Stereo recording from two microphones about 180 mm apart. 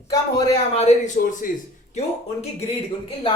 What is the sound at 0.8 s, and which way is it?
Speech, 45° left (ahead or behind).